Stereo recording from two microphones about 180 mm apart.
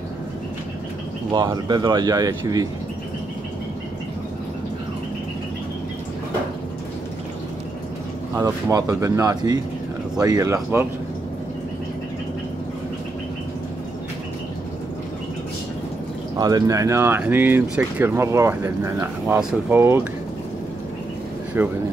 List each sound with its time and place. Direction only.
1.3 s speech: 25° right (ahead or behind)
8.4 s speech: 20° right (ahead or behind)
16.3 s speech: 20° right (ahead or behind)
21.5 s speech: 10° right (ahead or behind)